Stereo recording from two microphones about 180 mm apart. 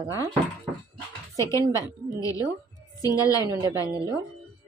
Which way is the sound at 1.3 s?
20° left (ahead or behind).